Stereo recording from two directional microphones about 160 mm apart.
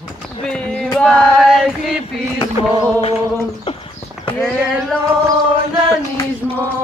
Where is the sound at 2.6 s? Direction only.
35° left (ahead or behind).